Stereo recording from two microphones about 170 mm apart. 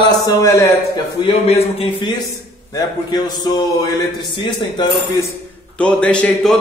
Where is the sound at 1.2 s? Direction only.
35° left (ahead or behind).